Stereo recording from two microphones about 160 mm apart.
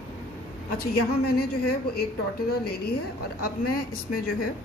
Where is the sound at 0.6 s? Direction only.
75° left (ahead or behind).